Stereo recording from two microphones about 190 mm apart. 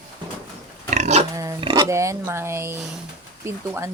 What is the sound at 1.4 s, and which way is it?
Speech, 20° right (ahead or behind).